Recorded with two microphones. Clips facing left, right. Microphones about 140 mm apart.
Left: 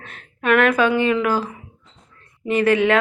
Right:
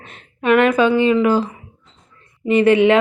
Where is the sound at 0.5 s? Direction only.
5° right (ahead or behind).